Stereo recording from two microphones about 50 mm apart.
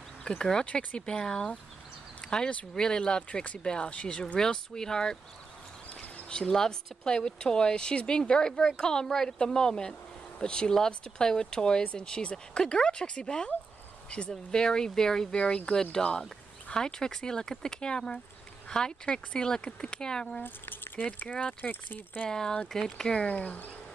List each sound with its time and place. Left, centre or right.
0.2 s speech: centre
6.3 s speech: centre
20.4 s speech: left
21.3 s speech: left
21.5 s speech: left
22.3 s speech: centre
23.2 s speech: left